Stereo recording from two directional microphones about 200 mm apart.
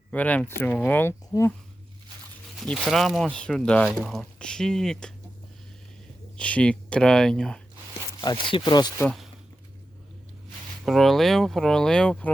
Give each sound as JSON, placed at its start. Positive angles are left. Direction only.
{"t": 0.1, "sound": "speech", "side_deg": 5}
{"t": 2.6, "sound": "speech", "side_deg": 0}
{"t": 6.3, "sound": "speech", "side_deg": 5}
{"t": 8.4, "sound": "speech", "side_deg": 25}
{"t": 9.0, "sound": "speech", "side_deg": 0}
{"t": 10.8, "sound": "speech", "side_deg": 0}